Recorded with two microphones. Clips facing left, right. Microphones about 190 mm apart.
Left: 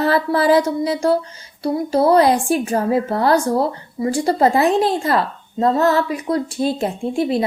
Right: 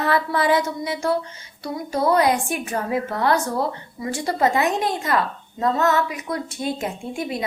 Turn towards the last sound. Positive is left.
turn(degrees=30)  # may be behind; listen again after turning